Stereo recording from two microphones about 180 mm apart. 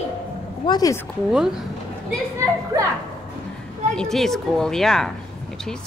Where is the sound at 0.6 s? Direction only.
20° left (ahead or behind).